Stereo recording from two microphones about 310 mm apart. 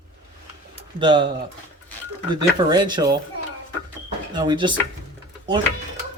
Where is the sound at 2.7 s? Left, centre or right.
Centre.